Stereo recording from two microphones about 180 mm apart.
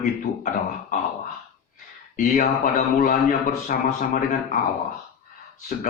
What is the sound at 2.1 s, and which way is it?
A man's voice, 50° left (ahead or behind).